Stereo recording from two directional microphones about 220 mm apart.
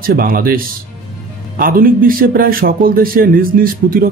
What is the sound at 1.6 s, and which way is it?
Speech, 40° right (ahead or behind).